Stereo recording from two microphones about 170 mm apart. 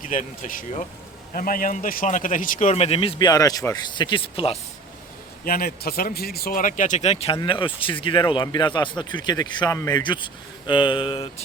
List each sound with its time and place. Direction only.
0.0 s a man's voice: 50° left (ahead or behind); by 4.5 s 35° left (ahead or behind)
5.5 s a man's voice: 60° left (ahead or behind); by 11.3 s 30° left (ahead or behind)